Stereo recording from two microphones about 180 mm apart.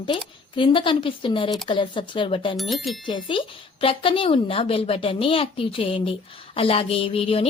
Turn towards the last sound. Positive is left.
turn(degrees=30)  # may be behind; listen again after turning